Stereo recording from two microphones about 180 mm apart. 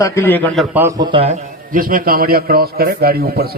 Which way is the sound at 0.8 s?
20° right (ahead or behind).